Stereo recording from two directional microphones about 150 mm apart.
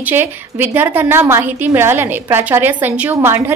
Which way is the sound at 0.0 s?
15° right (ahead or behind).